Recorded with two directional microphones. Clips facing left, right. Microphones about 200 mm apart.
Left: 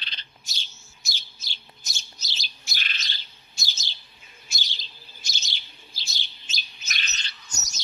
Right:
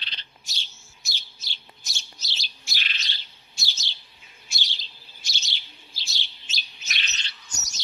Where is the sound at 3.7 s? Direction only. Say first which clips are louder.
Right 1 dB; 45° left (ahead or behind).